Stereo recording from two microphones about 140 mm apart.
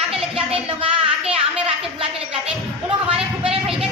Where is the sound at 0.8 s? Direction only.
45° right (ahead or behind).